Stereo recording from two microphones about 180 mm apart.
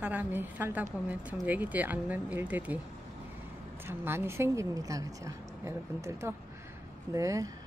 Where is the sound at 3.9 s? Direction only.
15° right (ahead or behind).